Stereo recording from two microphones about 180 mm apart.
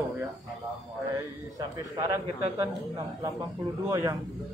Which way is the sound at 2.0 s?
20° right (ahead or behind).